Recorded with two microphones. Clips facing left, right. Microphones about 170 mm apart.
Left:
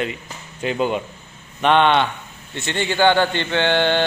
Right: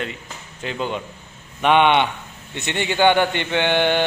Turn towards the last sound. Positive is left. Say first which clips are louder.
# left 1 dB
turn(degrees=-15)  # may be behind; listen again after turning